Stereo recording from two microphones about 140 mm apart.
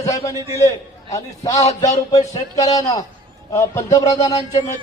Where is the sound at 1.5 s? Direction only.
50° left (ahead or behind).